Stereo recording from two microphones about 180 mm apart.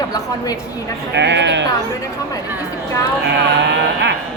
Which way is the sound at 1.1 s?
75° right (ahead or behind).